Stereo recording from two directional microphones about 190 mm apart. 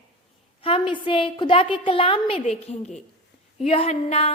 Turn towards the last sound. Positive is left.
turn(degrees=30)  # may be behind; listen again after turning